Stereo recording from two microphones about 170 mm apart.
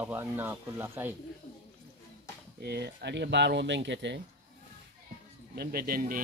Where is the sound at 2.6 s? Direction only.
70° right (ahead or behind); by 4.2 s 90° right.